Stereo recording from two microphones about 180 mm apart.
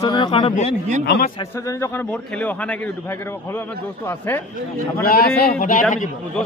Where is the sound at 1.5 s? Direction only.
15° left (ahead or behind).